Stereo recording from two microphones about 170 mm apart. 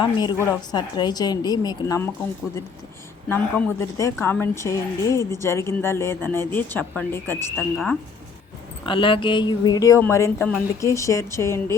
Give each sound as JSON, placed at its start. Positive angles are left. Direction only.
{"t": 0.0, "sound": "speech", "side_deg": 25}
{"t": 3.2, "sound": "speech", "side_deg": 15}
{"t": 7.5, "sound": "speech", "side_deg": 0}
{"t": 8.9, "sound": "speech", "side_deg": 30}